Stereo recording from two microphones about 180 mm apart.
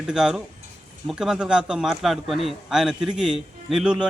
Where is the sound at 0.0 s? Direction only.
5° right (ahead or behind).